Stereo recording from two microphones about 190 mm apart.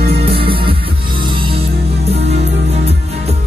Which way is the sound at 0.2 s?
30° right (ahead or behind).